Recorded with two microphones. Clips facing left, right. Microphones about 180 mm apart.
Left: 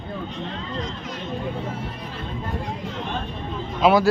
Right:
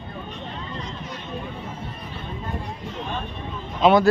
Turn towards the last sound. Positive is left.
turn(degrees=5)  # may be behind; listen again after turning